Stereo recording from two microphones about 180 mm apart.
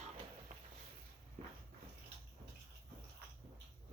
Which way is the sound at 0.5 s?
45° right (ahead or behind).